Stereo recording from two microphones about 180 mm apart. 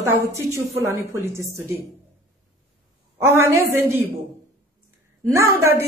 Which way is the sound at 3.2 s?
15° right (ahead or behind).